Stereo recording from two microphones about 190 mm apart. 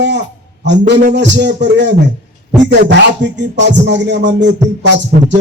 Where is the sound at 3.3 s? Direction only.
70° right (ahead or behind).